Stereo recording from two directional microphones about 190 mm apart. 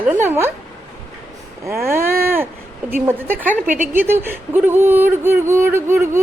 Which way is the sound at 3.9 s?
10° right (ahead or behind).